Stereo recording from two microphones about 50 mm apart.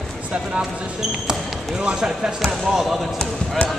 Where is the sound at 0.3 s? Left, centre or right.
Right.